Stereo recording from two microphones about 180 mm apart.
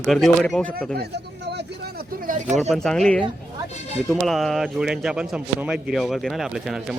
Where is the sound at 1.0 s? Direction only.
65° right (ahead or behind); by 2.4 s 50° right (ahead or behind).